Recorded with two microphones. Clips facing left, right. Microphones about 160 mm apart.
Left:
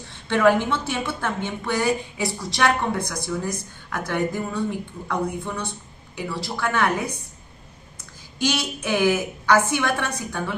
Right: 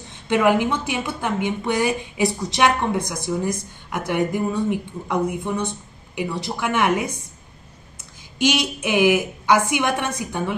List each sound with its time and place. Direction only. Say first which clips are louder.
0.3 s a woman's voice: right 1 dB; 15° right (ahead or behind)
8.4 s a woman's voice: right 4 dB; 20° right (ahead or behind)